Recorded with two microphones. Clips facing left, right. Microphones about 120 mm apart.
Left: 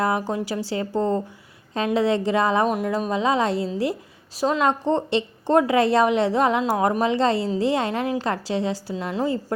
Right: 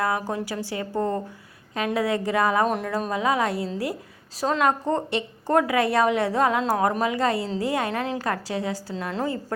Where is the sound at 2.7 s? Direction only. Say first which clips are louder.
Left 3 dB; 10° left (ahead or behind).